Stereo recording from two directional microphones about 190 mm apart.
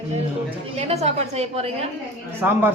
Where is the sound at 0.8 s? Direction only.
35° right (ahead or behind).